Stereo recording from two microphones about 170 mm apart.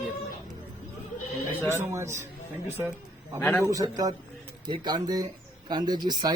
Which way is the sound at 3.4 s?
10° left (ahead or behind).